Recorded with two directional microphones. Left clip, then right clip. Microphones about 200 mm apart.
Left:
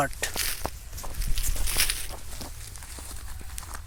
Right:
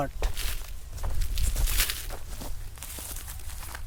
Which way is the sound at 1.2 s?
40° right (ahead or behind).